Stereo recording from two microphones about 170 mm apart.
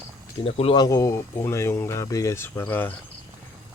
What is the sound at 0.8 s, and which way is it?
Speech, 20° left (ahead or behind).